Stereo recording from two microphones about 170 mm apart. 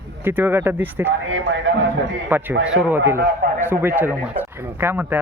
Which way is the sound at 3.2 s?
70° right (ahead or behind).